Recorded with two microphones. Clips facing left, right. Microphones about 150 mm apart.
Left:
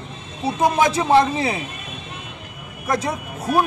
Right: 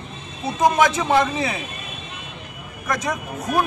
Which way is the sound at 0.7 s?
30° left (ahead or behind).